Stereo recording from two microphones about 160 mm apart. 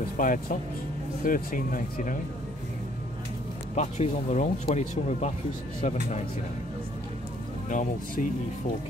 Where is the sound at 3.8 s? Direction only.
45° left (ahead or behind).